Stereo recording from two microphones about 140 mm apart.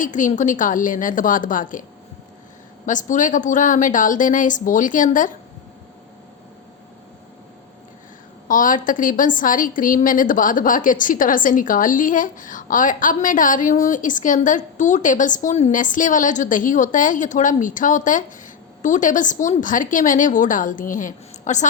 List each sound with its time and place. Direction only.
0.0 s a woman's voice: 65° left (ahead or behind)
2.8 s a woman's voice: 65° left (ahead or behind)
8.4 s a woman's voice: 70° left (ahead or behind)